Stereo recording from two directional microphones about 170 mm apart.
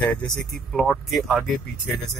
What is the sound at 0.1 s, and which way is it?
Speech, centre (ahead or behind).